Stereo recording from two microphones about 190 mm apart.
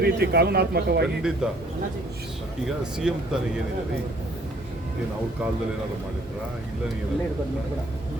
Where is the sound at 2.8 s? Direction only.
5° right (ahead or behind).